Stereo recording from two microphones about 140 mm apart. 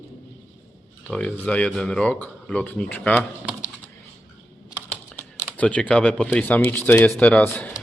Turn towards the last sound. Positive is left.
turn(degrees=10)  # may be behind; listen again after turning